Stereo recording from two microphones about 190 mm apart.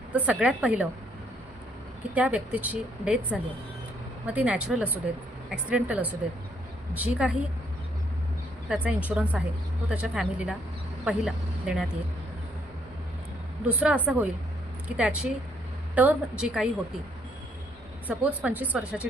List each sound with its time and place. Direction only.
0.1 s speech: 5° right (ahead or behind)
2.1 s speech: 5° right (ahead or behind)
8.7 s speech: 10° right (ahead or behind)
13.7 s speech: 10° right (ahead or behind)
18.1 s speech: 5° right (ahead or behind)